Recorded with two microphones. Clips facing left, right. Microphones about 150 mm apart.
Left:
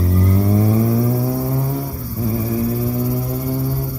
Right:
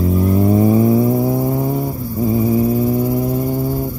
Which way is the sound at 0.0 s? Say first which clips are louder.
Right 4 dB; 10° right (ahead or behind).